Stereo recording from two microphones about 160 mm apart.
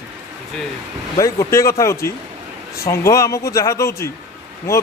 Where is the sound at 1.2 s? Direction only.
20° left (ahead or behind).